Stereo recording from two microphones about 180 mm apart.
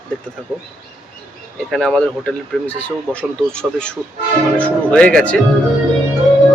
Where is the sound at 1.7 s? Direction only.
5° left (ahead or behind).